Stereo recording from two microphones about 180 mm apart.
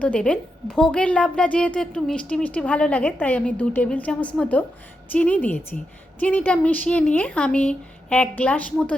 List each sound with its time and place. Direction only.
0.0 s a woman's voice: 5° left (ahead or behind)